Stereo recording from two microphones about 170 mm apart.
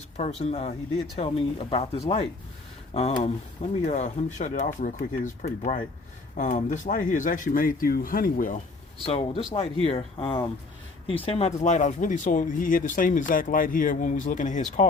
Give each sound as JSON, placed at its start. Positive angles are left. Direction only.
{"t": 0.2, "sound": "speech", "side_deg": 40}
{"t": 9.0, "sound": "speech", "side_deg": 35}